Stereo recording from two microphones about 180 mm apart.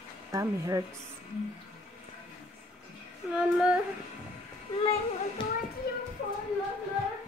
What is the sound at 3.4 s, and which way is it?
Child singing, 5° right (ahead or behind).